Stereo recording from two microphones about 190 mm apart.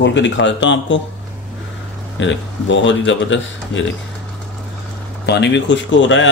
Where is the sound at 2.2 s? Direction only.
75° left (ahead or behind).